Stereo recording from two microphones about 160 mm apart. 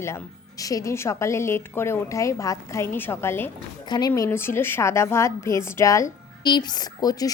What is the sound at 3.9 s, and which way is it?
A woman's voice, 25° left (ahead or behind).